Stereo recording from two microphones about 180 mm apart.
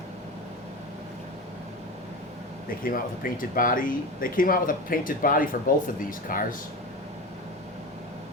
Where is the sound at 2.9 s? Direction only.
50° left (ahead or behind).